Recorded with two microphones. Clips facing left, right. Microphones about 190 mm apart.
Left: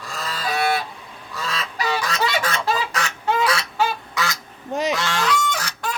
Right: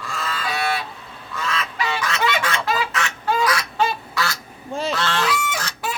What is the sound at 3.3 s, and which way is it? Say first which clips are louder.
Fowl: even; 25° left (ahead or behind).